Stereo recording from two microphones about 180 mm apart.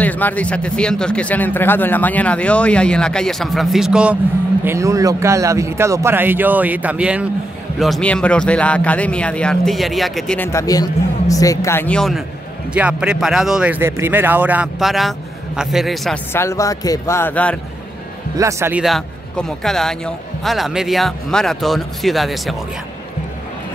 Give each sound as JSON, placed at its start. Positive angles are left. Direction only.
{"t": 0.0, "sound": "speech", "side_deg": 10}
{"t": 4.6, "sound": "speech", "side_deg": -15}
{"t": 7.8, "sound": "speech", "side_deg": 5}
{"t": 12.7, "sound": "speech", "side_deg": -5}
{"t": 16.3, "sound": "speech", "side_deg": 15}
{"t": 18.4, "sound": "speech", "side_deg": -15}
{"t": 18.8, "sound": "speech", "side_deg": 0}